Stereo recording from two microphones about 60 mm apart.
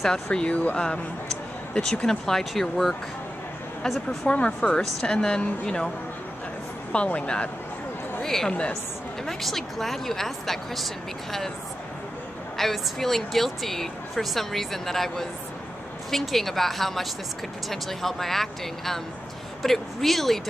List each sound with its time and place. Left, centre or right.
0.0 s speech: centre
1.7 s a woman's voice: centre
4.3 s speech: left
6.9 s speech: left
8.2 s a woman's voice: centre
12.5 s a woman's voice: centre